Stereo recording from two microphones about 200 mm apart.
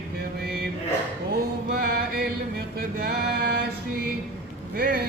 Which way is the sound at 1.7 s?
50° right (ahead or behind).